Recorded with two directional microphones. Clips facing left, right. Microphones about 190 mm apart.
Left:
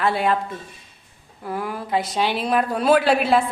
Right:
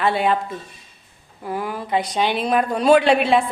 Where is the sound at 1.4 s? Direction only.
Centre (ahead or behind).